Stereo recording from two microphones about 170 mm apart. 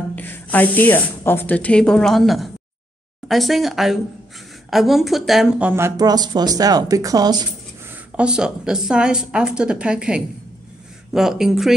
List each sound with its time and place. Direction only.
0.1 s a woman's voice: 10° left (ahead or behind); by 7.4 s 25° right (ahead or behind)
8.2 s a woman's voice: 5° right (ahead or behind)